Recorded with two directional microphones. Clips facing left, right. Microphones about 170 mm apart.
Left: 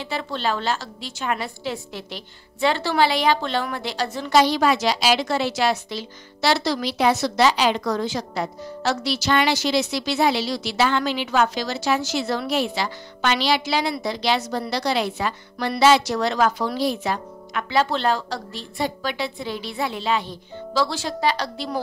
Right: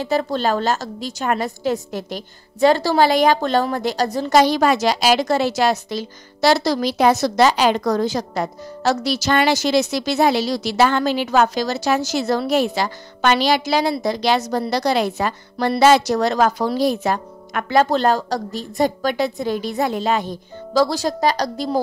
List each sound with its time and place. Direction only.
0.0 s a woman's voice: 45° right (ahead or behind)